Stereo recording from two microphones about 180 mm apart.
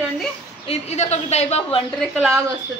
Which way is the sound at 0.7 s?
40° left (ahead or behind).